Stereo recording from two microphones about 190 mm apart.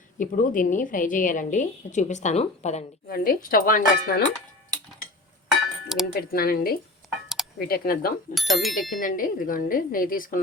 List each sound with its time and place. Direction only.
0.2 s a woman's voice: 45° left (ahead or behind)
3.1 s a woman's voice: 50° left (ahead or behind)
5.5 s a sound: centre (ahead or behind)
6.1 s a woman's voice: 55° left (ahead or behind)
8.4 s speech: centre (ahead or behind)
9.0 s a woman's voice: 45° left (ahead or behind)